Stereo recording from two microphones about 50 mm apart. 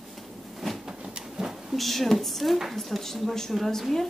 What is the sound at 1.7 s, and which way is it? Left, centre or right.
A woman's voice, centre.